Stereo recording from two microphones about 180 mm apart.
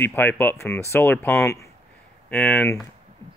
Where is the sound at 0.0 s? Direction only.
10° left (ahead or behind).